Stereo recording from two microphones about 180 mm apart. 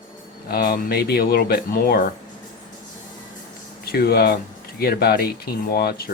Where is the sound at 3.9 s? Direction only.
60° left (ahead or behind).